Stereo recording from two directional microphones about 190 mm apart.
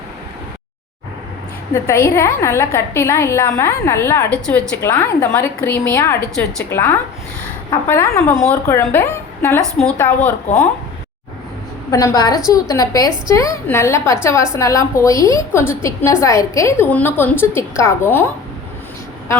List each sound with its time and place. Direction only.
1.7 s a woman's voice: 15° left (ahead or behind)
11.9 s a woman's voice: 20° left (ahead or behind)